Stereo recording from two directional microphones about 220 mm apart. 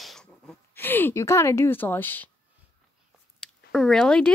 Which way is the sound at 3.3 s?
Centre (ahead or behind).